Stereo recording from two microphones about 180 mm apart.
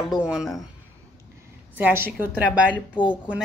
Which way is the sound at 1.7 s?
10° right (ahead or behind).